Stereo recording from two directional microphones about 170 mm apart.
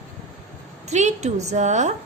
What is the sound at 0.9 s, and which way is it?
A woman's voice, 45° right (ahead or behind).